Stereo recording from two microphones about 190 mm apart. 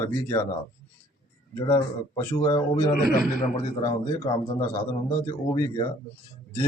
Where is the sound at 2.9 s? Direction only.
50° left (ahead or behind).